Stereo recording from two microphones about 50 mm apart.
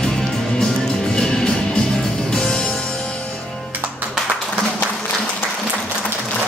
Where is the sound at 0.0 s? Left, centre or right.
Centre.